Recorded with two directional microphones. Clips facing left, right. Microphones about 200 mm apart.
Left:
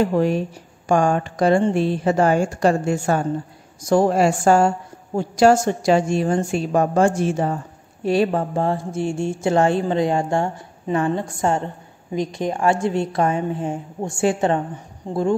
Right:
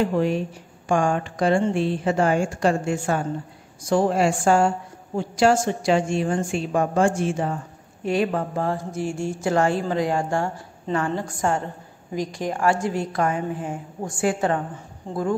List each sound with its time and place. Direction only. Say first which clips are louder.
0.8 s a woman's voice: left 3 dB; 40° left (ahead or behind)